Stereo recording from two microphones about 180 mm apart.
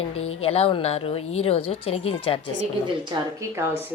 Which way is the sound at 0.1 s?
35° left (ahead or behind).